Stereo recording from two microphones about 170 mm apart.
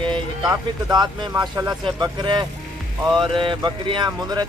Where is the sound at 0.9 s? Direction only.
25° right (ahead or behind).